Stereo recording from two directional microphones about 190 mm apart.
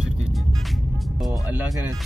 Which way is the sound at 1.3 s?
10° right (ahead or behind).